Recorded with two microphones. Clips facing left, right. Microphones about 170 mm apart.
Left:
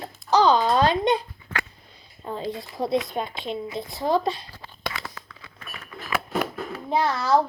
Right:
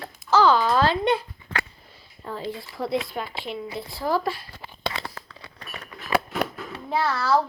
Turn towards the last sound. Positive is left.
turn(degrees=20)  # may be behind; listen again after turning